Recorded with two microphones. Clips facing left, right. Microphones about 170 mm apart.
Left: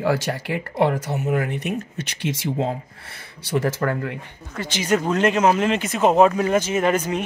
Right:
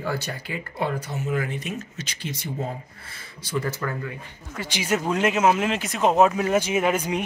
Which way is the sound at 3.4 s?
75° left (ahead or behind).